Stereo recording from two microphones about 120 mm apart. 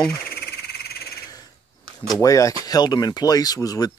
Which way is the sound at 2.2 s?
30° left (ahead or behind).